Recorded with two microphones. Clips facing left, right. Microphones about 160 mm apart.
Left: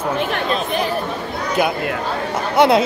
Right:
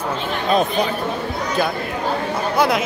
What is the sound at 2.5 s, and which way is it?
Speech, 25° left (ahead or behind).